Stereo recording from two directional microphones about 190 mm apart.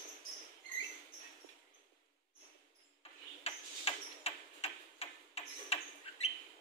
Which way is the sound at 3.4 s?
30° left (ahead or behind).